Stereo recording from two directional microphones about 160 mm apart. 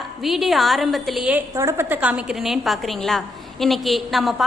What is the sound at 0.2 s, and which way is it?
A woman's voice, centre (ahead or behind).